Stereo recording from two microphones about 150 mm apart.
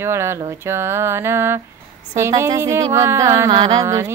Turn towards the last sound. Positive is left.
turn(degrees=-20)  # may be behind; listen again after turning